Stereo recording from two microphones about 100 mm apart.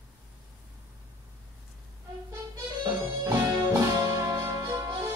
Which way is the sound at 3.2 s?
35° right (ahead or behind).